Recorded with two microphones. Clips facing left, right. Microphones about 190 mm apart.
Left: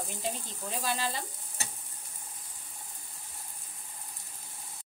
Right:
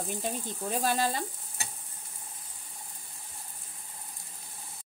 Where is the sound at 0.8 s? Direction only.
45° right (ahead or behind).